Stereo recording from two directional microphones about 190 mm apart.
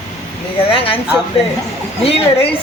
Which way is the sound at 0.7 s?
30° left (ahead or behind).